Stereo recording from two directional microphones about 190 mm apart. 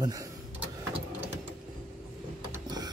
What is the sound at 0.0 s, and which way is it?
Speech, 15° right (ahead or behind).